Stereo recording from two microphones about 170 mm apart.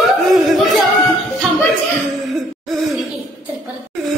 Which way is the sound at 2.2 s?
Centre (ahead or behind).